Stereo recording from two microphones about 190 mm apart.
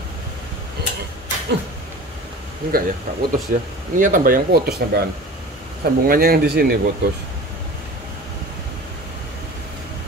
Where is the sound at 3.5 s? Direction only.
45° right (ahead or behind).